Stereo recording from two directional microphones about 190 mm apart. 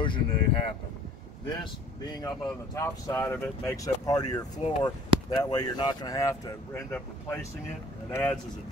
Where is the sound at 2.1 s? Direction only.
20° left (ahead or behind); by 3.7 s 5° left (ahead or behind).